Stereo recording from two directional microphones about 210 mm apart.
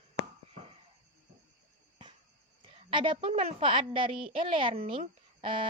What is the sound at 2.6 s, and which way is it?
A woman's voice, 25° right (ahead or behind).